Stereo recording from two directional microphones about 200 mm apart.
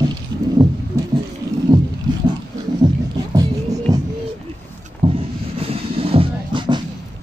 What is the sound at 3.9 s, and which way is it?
Music, 20° right (ahead or behind).